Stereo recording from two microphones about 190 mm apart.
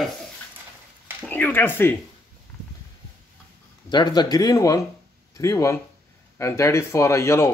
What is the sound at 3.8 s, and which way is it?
Speech, 20° left (ahead or behind).